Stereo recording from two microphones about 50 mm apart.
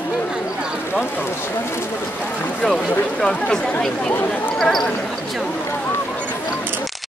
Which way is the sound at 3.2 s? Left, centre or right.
Centre.